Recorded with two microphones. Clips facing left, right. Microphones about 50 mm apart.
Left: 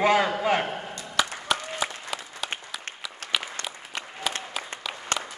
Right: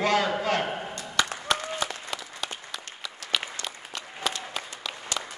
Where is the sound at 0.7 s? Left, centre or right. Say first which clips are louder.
Right 1 dB; centre.